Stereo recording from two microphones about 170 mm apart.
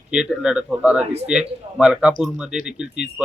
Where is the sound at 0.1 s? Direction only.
5° right (ahead or behind).